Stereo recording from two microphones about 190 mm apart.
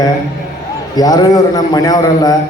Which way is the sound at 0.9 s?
20° left (ahead or behind).